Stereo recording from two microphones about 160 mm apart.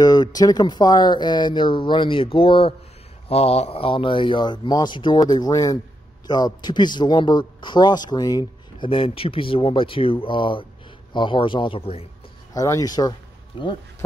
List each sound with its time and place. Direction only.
0.0 s speech: 25° left (ahead or behind)
12.5 s speech: 20° left (ahead or behind)